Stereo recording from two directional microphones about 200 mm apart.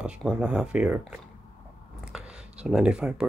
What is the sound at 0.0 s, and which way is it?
Speech, 5° right (ahead or behind).